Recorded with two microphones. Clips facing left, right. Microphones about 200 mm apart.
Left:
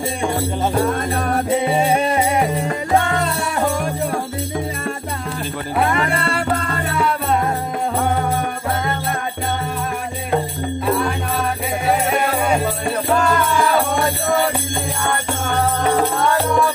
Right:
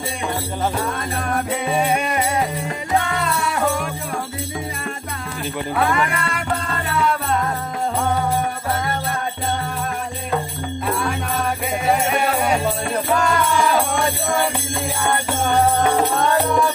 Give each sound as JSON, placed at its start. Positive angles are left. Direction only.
{"t": 1.1, "sound": "music", "side_deg": 35}
{"t": 3.1, "sound": "music", "side_deg": 40}
{"t": 5.8, "sound": "music", "side_deg": 30}